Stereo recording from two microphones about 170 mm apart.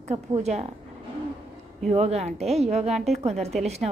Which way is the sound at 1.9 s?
40° right (ahead or behind).